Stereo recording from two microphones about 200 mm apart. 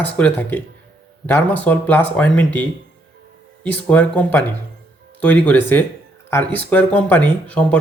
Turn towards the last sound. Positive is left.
turn(degrees=5)  # may be behind; listen again after turning